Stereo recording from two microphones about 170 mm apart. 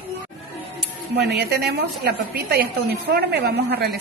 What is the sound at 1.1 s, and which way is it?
A woman's voice, 75° right (ahead or behind).